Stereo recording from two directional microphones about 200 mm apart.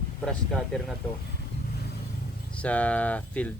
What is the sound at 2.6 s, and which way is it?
Speech, 5° left (ahead or behind).